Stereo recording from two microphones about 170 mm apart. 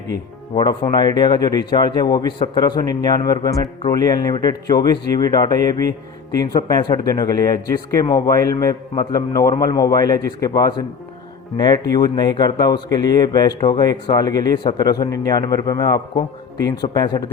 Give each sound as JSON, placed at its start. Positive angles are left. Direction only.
{"t": 0.5, "sound": "speech", "side_deg": 25}